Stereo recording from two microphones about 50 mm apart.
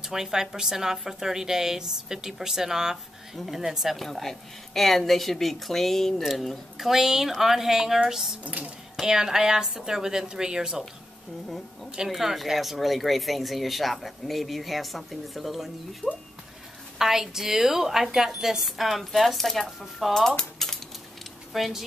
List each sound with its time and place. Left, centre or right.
0.0 s a woman's voice: centre
8.5 s speech: right
8.9 s a woman's voice: centre
11.4 s speech: centre
20.2 s cutlery: centre
21.5 s speech: centre